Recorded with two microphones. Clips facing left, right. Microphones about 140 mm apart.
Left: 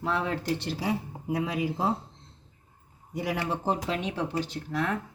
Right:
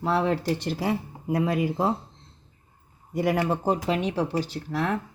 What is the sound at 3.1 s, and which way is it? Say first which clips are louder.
Speech: right 6 dB; 50° right (ahead or behind).